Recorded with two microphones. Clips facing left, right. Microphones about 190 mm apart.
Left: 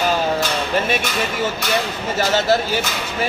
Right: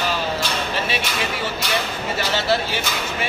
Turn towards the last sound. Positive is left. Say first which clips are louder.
# left 3 dB
turn(degrees=40)  # may be behind; listen again after turning